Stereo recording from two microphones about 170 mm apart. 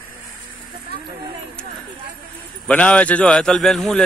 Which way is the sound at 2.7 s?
10° left (ahead or behind).